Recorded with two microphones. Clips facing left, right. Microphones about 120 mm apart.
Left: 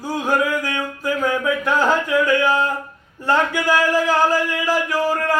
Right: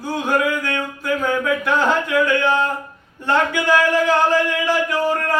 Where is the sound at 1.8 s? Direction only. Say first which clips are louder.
Left 1 dB; 10° left (ahead or behind).